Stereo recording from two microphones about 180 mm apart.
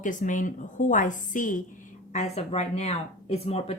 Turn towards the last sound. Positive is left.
turn(degrees=35)  # may be behind; listen again after turning